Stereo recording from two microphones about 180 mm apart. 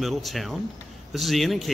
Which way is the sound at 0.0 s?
Centre (ahead or behind).